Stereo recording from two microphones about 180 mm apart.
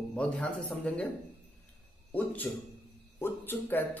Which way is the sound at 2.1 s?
10° left (ahead or behind).